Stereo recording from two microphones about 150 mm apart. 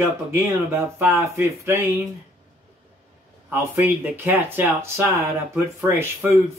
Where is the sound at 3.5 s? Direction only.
15° right (ahead or behind).